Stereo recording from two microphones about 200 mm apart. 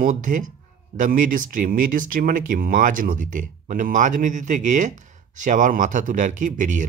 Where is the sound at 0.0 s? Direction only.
40° right (ahead or behind).